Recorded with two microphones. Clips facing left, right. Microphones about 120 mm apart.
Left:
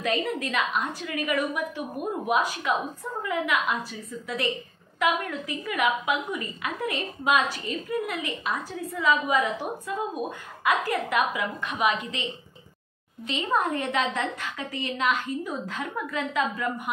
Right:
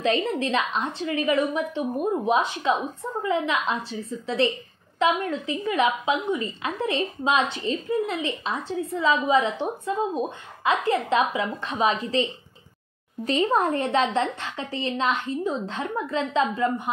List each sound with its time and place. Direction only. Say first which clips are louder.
0.0 s a woman's voice: right 4 dB; 30° right (ahead or behind)